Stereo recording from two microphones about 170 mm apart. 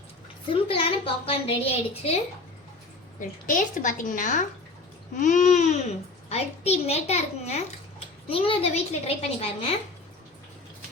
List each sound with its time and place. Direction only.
0.5 s a child's voice: 30° left (ahead or behind)
3.2 s a woman's voice: 50° left (ahead or behind); by 9.7 s 35° left (ahead or behind)